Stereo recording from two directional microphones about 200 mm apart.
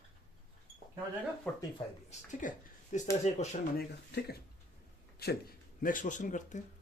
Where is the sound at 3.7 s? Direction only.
50° left (ahead or behind).